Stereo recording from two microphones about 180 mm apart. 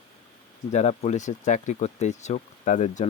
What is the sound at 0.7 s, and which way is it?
Speech, 35° left (ahead or behind).